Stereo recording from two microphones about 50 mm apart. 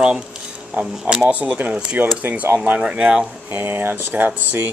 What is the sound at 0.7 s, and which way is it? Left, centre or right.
Speech, right.